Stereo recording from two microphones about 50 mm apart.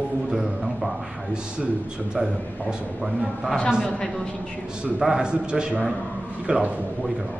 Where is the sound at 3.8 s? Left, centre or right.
Centre.